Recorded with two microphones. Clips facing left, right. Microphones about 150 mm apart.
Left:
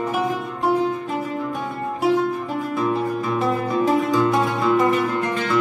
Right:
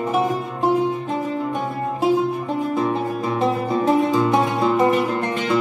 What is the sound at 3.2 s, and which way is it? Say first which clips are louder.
Music: right 1 dB; 25° right (ahead or behind).